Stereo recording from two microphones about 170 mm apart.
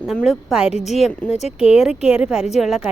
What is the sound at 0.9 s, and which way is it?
Speech, centre (ahead or behind).